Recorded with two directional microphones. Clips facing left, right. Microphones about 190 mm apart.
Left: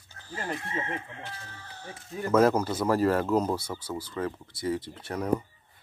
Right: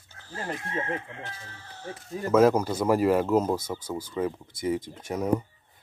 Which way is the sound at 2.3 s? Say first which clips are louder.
Right 2 dB; 10° right (ahead or behind).